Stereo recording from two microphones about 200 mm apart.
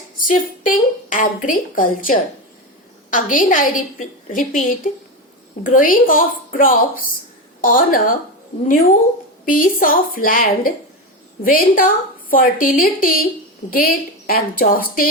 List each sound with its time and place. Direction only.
0.2 s a woman's voice: 40° left (ahead or behind)